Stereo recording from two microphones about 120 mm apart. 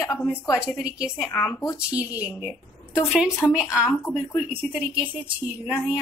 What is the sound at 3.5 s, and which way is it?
A woman's voice, 5° right (ahead or behind).